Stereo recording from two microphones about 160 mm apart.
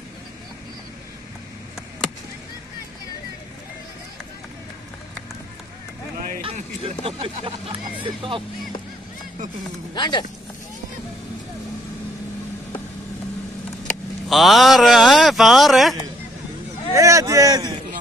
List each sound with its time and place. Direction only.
6.5 s speech: 35° right (ahead or behind)
9.9 s speech: 30° left (ahead or behind)
14.3 s a man's voice: centre (ahead or behind)
16.9 s a sound: 20° right (ahead or behind)